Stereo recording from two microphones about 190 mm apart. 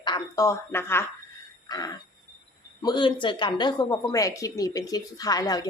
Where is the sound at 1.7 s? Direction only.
20° left (ahead or behind).